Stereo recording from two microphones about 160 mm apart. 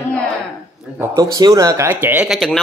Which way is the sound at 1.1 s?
20° right (ahead or behind).